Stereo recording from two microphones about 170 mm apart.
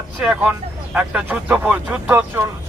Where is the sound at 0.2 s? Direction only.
5° right (ahead or behind).